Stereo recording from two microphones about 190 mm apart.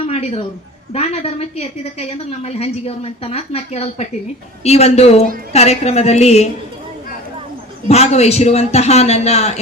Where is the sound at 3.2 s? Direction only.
30° left (ahead or behind).